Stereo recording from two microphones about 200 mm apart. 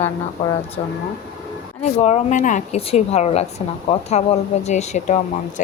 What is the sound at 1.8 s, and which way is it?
Speech, 35° left (ahead or behind).